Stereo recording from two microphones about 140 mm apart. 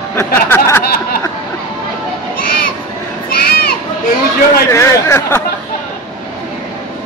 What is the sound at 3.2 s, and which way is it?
Crowd, 90° left.